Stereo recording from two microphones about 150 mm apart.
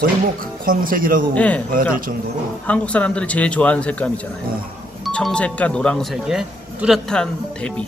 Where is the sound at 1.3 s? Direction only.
10° left (ahead or behind).